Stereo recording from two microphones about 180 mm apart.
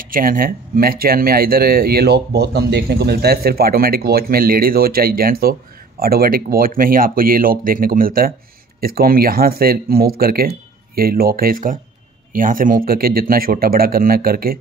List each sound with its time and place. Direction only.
0.0 s speech: 50° right (ahead or behind)